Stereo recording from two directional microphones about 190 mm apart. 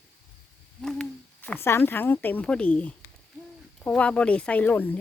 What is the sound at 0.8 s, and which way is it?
Hoot, 5° left (ahead or behind).